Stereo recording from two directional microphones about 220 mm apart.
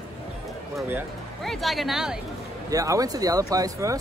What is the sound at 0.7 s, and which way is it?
Speech, 5° right (ahead or behind).